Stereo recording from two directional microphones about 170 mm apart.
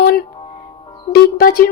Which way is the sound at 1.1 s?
60° left (ahead or behind).